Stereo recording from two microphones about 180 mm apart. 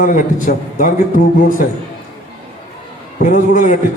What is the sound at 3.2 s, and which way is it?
Speech, 45° left (ahead or behind).